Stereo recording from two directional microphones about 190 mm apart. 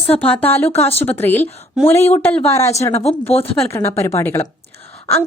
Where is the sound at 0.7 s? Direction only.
35° left (ahead or behind).